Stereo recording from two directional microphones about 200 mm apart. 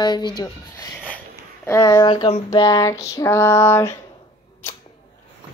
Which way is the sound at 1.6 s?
15° left (ahead or behind).